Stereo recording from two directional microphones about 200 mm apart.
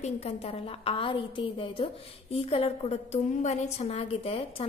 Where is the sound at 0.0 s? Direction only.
30° left (ahead or behind).